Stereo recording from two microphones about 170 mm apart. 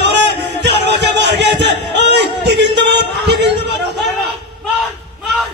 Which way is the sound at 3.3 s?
90° right.